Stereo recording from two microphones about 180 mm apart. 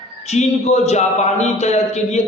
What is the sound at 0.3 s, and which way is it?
A man's voice, 35° left (ahead or behind).